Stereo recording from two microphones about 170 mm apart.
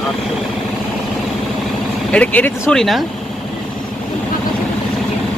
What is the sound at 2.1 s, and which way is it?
Speech, 10° left (ahead or behind).